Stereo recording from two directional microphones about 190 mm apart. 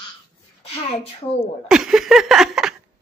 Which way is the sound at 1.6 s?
5° right (ahead or behind).